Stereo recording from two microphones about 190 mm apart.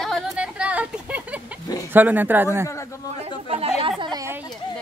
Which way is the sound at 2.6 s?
15° left (ahead or behind).